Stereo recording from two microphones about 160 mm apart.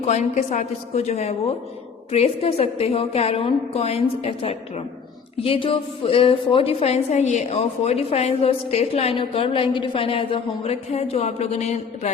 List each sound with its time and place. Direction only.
0.0 s a woman's voice: 45° left (ahead or behind)